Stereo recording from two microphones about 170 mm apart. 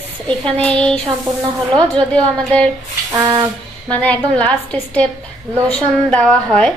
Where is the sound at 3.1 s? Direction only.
20° right (ahead or behind).